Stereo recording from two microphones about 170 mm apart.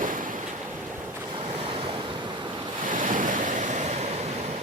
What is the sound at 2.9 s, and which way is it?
Waves, 50° right (ahead or behind).